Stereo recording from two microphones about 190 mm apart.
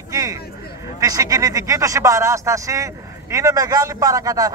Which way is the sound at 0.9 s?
20° right (ahead or behind).